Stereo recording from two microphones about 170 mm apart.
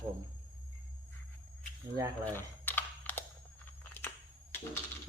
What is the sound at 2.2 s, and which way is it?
Camera, 10° left (ahead or behind).